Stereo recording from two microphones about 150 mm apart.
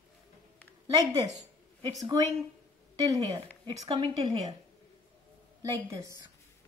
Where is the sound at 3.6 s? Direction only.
35° right (ahead or behind).